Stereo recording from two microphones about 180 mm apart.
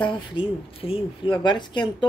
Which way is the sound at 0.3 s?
30° left (ahead or behind).